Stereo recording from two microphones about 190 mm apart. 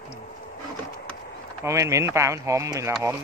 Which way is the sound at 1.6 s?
15° right (ahead or behind).